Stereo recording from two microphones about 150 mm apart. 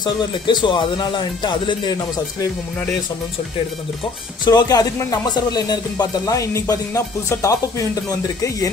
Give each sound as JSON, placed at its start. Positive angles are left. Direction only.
{"t": 0.0, "sound": "speech", "side_deg": 30}
{"t": 4.5, "sound": "speech", "side_deg": 25}